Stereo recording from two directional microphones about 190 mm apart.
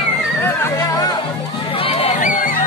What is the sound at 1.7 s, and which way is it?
Crowd, 30° left (ahead or behind).